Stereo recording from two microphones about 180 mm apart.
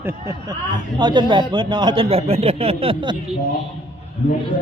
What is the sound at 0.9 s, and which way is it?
A man's voice, 25° right (ahead or behind).